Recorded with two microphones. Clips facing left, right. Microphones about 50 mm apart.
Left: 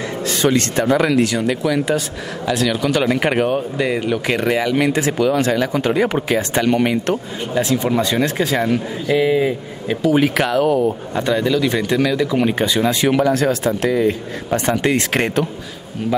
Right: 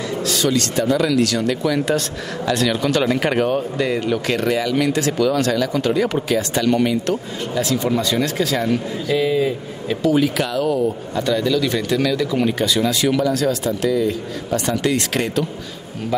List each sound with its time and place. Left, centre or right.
0.2 s speech: left
1.2 s speech: centre
10.1 s speech: left
11.2 s speech: left
12.4 s speech: left